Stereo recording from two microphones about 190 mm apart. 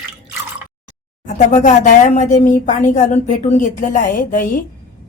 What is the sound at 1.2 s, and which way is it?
A woman's voice, 40° left (ahead or behind).